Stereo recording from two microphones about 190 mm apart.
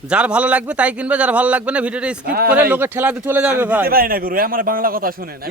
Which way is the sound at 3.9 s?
50° right (ahead or behind).